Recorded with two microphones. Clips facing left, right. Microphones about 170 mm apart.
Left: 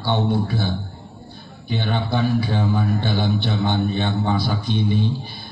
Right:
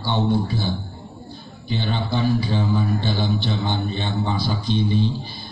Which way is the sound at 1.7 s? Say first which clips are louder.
Left 1 dB; 55° left (ahead or behind).